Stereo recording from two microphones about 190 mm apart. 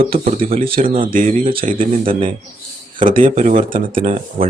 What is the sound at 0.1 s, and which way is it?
Speech, 30° right (ahead or behind).